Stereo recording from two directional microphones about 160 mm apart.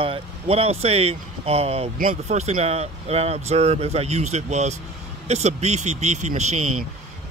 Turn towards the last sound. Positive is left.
turn(degrees=-45)  # may be behind; listen again after turning